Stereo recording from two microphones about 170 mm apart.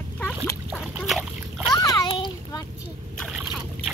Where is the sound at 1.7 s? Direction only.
20° left (ahead or behind).